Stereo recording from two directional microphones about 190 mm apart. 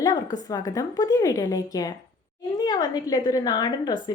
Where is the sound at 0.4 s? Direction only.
20° left (ahead or behind).